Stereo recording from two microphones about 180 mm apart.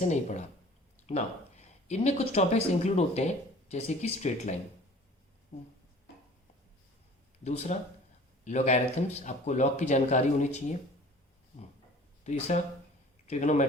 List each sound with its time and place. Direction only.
0.0 s speech: 40° left (ahead or behind)
7.4 s speech: 40° left (ahead or behind)
12.2 s a man's voice: 40° left (ahead or behind)